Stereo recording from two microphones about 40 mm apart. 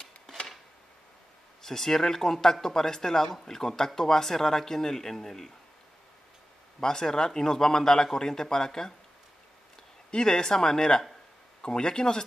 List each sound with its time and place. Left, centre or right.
1.6 s a man's voice: centre
6.8 s a man's voice: centre
10.1 s a man's voice: centre